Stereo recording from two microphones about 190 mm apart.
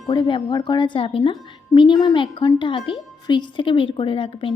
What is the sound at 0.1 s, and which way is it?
A woman's voice, 25° left (ahead or behind).